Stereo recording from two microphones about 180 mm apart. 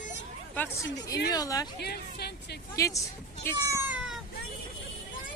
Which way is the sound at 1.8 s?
60° left (ahead or behind).